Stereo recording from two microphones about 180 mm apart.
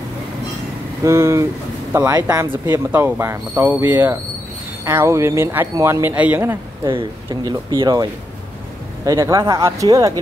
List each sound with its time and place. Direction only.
1.0 s speech: 15° right (ahead or behind)
6.8 s speech: 25° right (ahead or behind)